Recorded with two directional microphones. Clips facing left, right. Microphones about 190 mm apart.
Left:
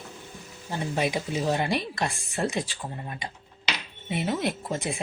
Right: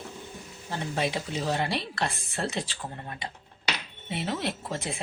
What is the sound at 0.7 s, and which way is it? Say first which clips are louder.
Speech: left 2 dB; 15° left (ahead or behind).